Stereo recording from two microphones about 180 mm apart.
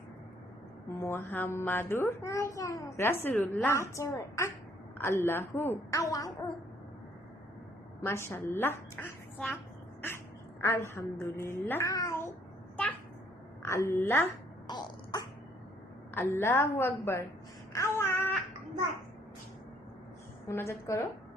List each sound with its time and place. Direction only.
1.0 s a child's voice: 10° left (ahead or behind)
8.0 s a child's voice: 15° left (ahead or behind)
10.6 s a child's voice: 15° left (ahead or behind)
13.7 s a child's voice: 15° left (ahead or behind)
14.7 s throat clearing: 20° left (ahead or behind)
16.1 s a child's voice: 15° left (ahead or behind)
17.9 s a sound: 15° left (ahead or behind)
20.5 s a child's voice: 15° left (ahead or behind)